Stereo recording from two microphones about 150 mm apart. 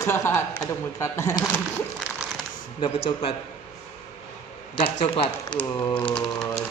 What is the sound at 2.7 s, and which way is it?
Speech, 40° left (ahead or behind).